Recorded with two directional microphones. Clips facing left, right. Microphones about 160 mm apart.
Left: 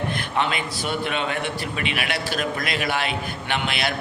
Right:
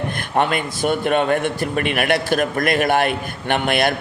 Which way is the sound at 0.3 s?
50° right (ahead or behind).